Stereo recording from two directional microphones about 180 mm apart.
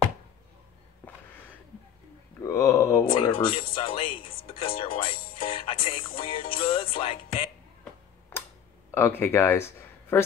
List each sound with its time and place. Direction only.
2.4 s mantra: 15° left (ahead or behind)
3.1 s speech: 30° left (ahead or behind)
3.7 s music: 30° left (ahead or behind)
4.6 s speech: 30° left (ahead or behind)
5.3 s music: 30° left (ahead or behind)
8.3 s tick-tock: 10° left (ahead or behind)
8.9 s speech: 10° left (ahead or behind)